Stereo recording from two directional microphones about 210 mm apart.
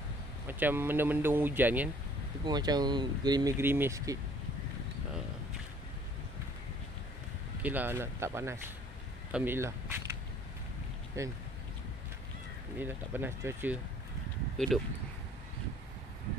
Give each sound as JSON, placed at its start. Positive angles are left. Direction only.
{"t": 0.5, "sound": "speech", "side_deg": -10}
{"t": 2.4, "sound": "speech", "side_deg": -20}
{"t": 7.6, "sound": "speech", "side_deg": -10}
{"t": 11.2, "sound": "speech", "side_deg": -15}
{"t": 12.7, "sound": "speech", "side_deg": -10}
{"t": 14.7, "sound": "speech", "side_deg": 0}